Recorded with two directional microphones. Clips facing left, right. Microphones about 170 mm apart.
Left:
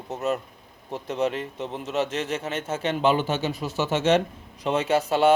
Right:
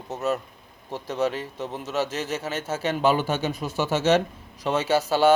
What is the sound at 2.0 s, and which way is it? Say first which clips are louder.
A man's voice: left 1 dB; 5° right (ahead or behind).